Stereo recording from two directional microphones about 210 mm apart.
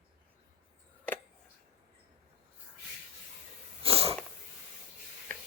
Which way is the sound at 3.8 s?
25° right (ahead or behind).